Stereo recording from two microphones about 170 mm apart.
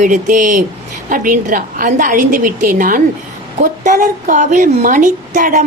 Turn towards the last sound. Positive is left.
turn(degrees=-45)  # may be behind; listen again after turning